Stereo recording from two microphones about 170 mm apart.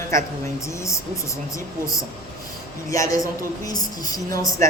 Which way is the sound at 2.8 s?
20° left (ahead or behind).